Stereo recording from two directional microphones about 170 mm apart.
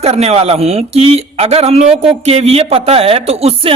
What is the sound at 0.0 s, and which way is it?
Speech, 40° right (ahead or behind).